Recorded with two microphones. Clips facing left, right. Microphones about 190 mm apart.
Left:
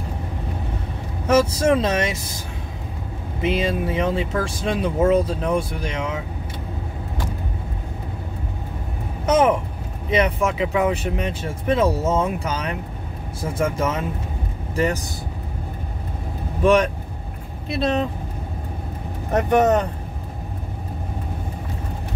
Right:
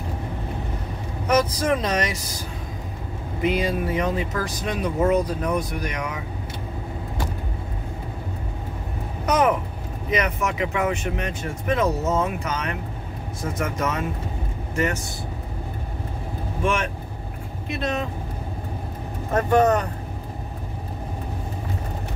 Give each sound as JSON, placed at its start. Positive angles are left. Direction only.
{"t": 1.2, "sound": "speech", "side_deg": 25}
{"t": 3.4, "sound": "speech", "side_deg": 25}
{"t": 9.2, "sound": "speech", "side_deg": 25}
{"t": 16.6, "sound": "speech", "side_deg": 35}
{"t": 19.3, "sound": "speech", "side_deg": 20}